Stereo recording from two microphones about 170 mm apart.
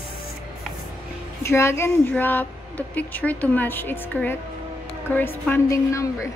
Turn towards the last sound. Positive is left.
turn(degrees=20)  # may be behind; listen again after turning